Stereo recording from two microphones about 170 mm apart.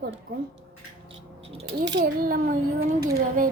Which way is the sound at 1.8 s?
85° right.